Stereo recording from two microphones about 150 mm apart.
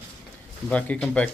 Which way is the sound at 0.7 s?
10° left (ahead or behind).